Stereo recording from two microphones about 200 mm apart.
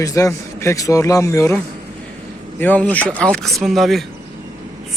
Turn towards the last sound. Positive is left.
turn(degrees=0)  # may be behind; listen again after turning